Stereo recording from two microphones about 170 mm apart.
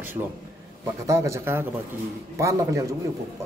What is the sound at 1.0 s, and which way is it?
Speech, 15° right (ahead or behind).